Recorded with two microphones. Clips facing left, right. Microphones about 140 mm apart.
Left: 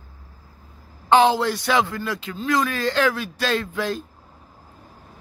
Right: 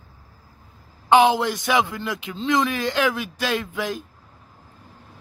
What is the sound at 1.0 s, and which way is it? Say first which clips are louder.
Speech: even; 15° right (ahead or behind).